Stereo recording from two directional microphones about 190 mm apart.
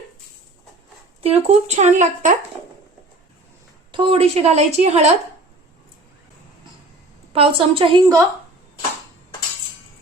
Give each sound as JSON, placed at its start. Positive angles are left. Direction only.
{"t": 1.2, "sound": "a woman's voice", "side_deg": -35}
{"t": 3.9, "sound": "a woman's voice", "side_deg": -30}
{"t": 7.3, "sound": "a woman's voice", "side_deg": -30}